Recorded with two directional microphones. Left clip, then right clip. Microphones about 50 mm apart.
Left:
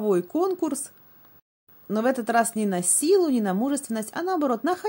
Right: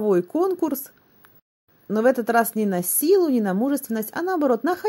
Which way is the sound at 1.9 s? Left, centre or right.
Right.